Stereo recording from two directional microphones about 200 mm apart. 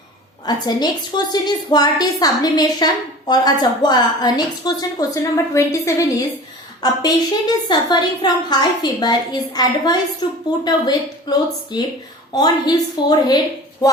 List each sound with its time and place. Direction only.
0.4 s a woman's voice: 20° left (ahead or behind)